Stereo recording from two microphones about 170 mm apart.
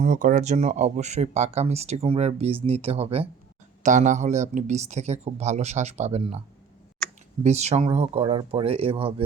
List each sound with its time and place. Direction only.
0.0 s speech: 55° right (ahead or behind)
7.4 s speech: 40° right (ahead or behind)